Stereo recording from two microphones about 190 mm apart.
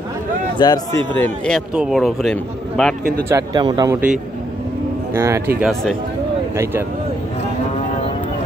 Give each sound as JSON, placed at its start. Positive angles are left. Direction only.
{"t": 0.6, "sound": "a man's voice", "side_deg": 25}
{"t": 1.1, "sound": "a man's voice", "side_deg": 5}
{"t": 3.3, "sound": "a man's voice", "side_deg": -20}
{"t": 5.1, "sound": "a man's voice", "side_deg": -15}
{"t": 5.6, "sound": "a man's voice", "side_deg": 0}
{"t": 6.5, "sound": "a man's voice", "side_deg": -15}